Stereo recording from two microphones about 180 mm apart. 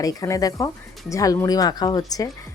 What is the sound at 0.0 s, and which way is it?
A woman's voice, 20° left (ahead or behind).